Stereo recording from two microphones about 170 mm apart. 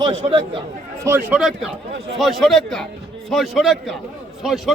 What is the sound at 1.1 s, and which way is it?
Speech, 15° right (ahead or behind).